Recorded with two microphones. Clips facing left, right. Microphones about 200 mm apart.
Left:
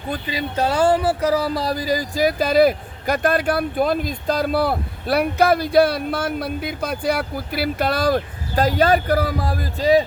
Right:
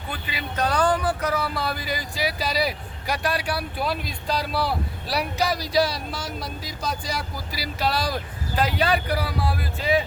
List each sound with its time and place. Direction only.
0.1 s speech: 35° left (ahead or behind)